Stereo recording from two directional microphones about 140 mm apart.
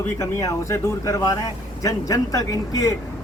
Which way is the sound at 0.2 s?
20° left (ahead or behind).